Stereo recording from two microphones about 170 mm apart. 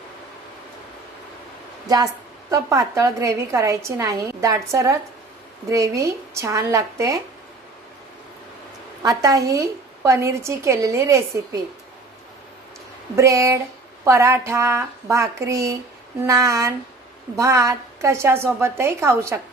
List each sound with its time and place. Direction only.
2.5 s a woman's voice: 20° right (ahead or behind)
9.0 s a woman's voice: 20° right (ahead or behind)
13.1 s a woman's voice: 20° right (ahead or behind)